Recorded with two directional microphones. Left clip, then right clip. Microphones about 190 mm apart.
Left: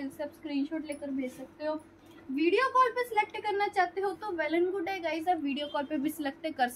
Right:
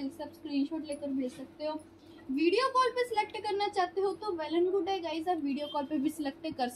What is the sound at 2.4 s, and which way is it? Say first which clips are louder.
A woman's voice: left 2 dB; 15° right (ahead or behind).